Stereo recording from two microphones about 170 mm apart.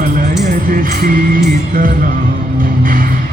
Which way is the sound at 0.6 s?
55° right (ahead or behind).